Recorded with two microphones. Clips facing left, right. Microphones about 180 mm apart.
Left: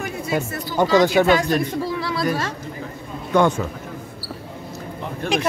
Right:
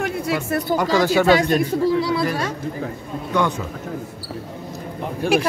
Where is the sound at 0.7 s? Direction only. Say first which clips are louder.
Left 3 dB; 15° left (ahead or behind).